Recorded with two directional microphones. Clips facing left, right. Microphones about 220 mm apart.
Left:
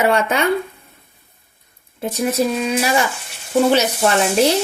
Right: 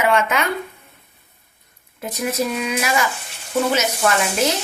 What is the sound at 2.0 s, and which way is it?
A woman's voice, 30° left (ahead or behind).